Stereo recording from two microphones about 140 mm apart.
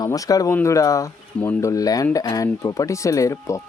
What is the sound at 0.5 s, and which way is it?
Speech, 20° left (ahead or behind).